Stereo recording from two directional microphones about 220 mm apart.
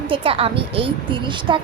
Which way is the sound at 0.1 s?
25° right (ahead or behind).